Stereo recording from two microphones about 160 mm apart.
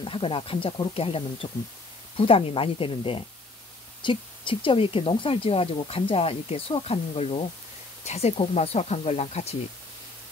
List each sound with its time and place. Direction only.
0.0 s speech: 35° left (ahead or behind)
4.0 s a sound: 30° left (ahead or behind)
4.6 s speech: 35° left (ahead or behind)